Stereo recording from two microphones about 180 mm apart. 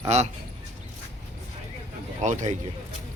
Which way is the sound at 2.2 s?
40° right (ahead or behind).